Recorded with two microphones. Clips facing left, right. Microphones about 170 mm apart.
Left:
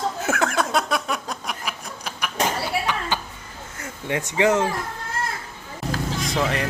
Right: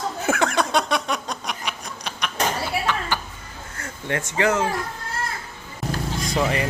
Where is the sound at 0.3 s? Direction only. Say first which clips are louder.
Right 2 dB; 5° left (ahead or behind).